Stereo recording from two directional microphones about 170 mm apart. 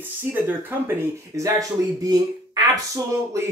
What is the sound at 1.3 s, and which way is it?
Speech, 20° right (ahead or behind).